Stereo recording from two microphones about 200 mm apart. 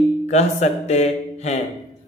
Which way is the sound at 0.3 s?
35° left (ahead or behind).